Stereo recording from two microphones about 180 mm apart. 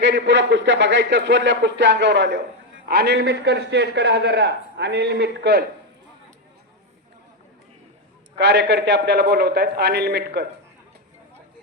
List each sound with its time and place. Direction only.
0.0 s a man's voice: 75° right (ahead or behind)
8.4 s a man's voice: 75° right (ahead or behind)